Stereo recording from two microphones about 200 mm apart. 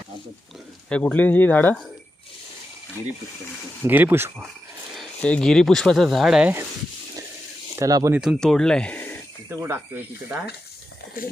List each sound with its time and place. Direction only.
0.9 s speech: 5° left (ahead or behind)
3.8 s speech: 10° right (ahead or behind)
4.9 s speech: 5° left (ahead or behind)
7.8 s speech: 15° right (ahead or behind)
8.2 s speech: centre (ahead or behind)
9.5 s speech: 10° right (ahead or behind)